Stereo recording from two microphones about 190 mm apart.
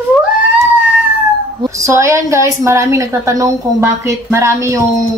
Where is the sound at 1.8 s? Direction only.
15° right (ahead or behind).